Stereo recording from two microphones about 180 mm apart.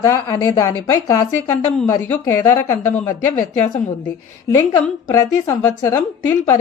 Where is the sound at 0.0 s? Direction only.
20° left (ahead or behind).